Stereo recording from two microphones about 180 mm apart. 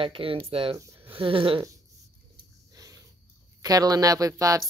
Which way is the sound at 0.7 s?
15° right (ahead or behind).